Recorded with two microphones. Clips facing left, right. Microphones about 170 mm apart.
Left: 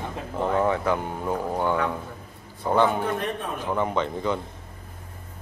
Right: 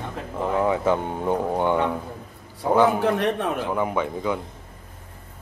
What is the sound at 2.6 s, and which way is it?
Speech, 5° right (ahead or behind).